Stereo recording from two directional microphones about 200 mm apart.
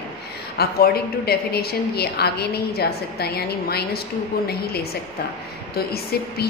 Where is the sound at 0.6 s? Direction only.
50° left (ahead or behind).